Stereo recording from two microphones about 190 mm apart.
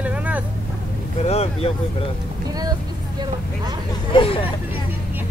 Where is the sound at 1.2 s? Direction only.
30° left (ahead or behind).